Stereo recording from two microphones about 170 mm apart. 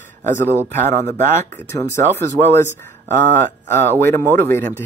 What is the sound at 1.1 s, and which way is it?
Speech, 15° left (ahead or behind).